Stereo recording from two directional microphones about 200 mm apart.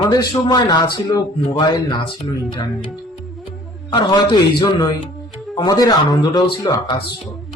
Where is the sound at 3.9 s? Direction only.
20° left (ahead or behind).